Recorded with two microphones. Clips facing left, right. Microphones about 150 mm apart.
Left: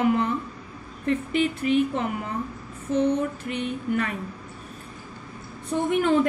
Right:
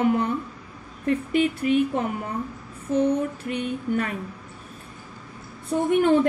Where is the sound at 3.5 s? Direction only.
45° right (ahead or behind).